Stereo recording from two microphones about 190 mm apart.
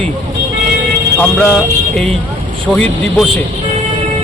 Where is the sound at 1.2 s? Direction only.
5° left (ahead or behind).